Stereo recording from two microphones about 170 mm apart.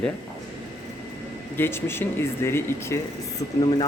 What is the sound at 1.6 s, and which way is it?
Speech, 15° left (ahead or behind).